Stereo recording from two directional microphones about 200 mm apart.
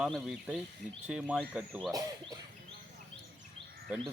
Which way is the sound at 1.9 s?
20° right (ahead or behind).